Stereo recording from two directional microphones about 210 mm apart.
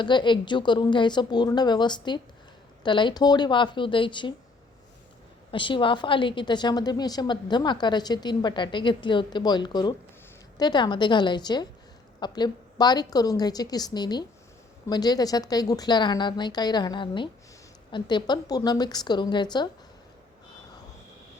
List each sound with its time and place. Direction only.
0.0 s a woman's voice: 20° left (ahead or behind)
5.5 s a woman's voice: 25° left (ahead or behind)